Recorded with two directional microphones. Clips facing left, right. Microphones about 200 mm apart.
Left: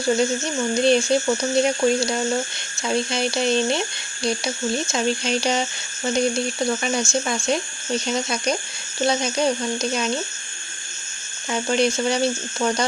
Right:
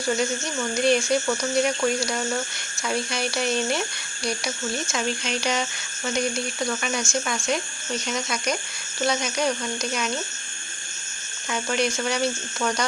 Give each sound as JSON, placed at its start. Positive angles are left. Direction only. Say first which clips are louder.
{"t": 0.7, "sound": "speech", "louder": "left 3 dB", "side_deg": 25}
{"t": 11.5, "sound": "speech", "louder": "left 5 dB", "side_deg": 30}